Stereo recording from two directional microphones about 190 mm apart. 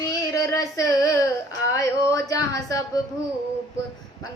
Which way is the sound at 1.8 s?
15° left (ahead or behind).